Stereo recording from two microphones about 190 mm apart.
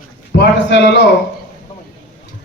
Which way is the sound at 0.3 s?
60° left (ahead or behind).